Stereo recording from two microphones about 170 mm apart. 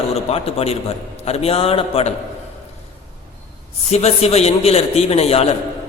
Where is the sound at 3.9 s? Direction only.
40° left (ahead or behind).